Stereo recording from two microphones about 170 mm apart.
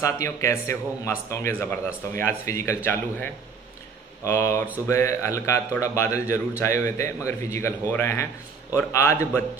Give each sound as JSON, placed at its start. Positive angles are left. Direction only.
{"t": 0.0, "sound": "a man's voice", "side_deg": 20}